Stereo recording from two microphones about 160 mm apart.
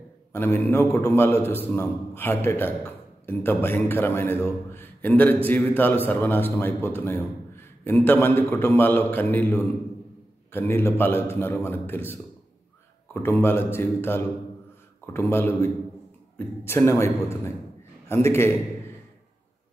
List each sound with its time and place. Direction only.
0.3 s a man's voice: 15° left (ahead or behind)